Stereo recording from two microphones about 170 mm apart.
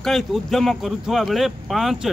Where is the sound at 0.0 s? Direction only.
Centre (ahead or behind).